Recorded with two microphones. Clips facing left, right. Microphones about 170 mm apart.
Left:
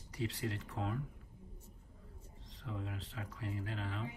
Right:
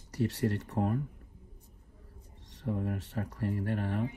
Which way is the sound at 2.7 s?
60° right (ahead or behind).